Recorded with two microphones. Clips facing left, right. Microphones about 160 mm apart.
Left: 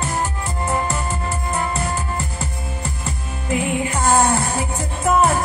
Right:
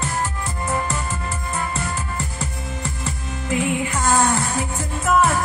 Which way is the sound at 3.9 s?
30° left (ahead or behind).